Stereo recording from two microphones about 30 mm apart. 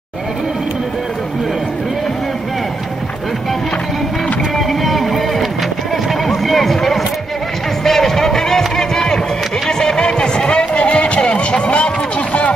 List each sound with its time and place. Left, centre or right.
4.6 s music: centre
6.2 s run: centre
7.8 s music: centre
9.7 s speech: left
10.6 s run: left